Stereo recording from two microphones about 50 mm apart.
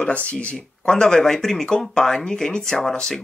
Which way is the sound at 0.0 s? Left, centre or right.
Left.